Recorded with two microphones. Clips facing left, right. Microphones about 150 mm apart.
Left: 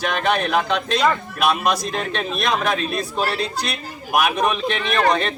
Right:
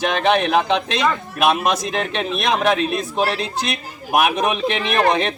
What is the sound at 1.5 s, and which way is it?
Speech, 65° right (ahead or behind).